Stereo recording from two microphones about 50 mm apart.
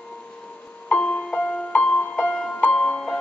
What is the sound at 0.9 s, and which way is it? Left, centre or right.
Music, left.